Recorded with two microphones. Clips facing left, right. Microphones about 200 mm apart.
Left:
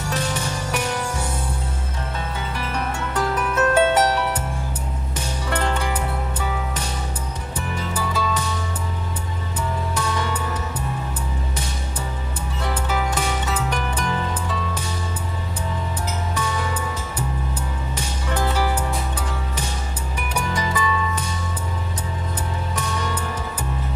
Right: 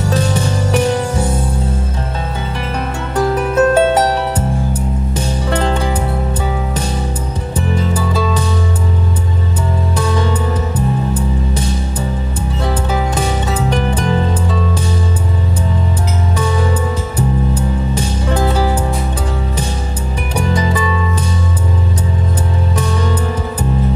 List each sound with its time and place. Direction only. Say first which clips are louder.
0.1 s music: right 7 dB; 30° right (ahead or behind)
3.2 s music: right 9 dB; 30° right (ahead or behind)
7.5 s music: right 10 dB; 30° right (ahead or behind)
9.9 s music: right 10 dB; 30° right (ahead or behind)
12.6 s music: right 5 dB; 30° right (ahead or behind)
16.3 s music: right 10 dB; 30° right (ahead or behind)
17.9 s music: right 5 dB; 30° right (ahead or behind)
20.3 s music: right 8 dB; 30° right (ahead or behind)
22.8 s music: right 8 dB; 30° right (ahead or behind)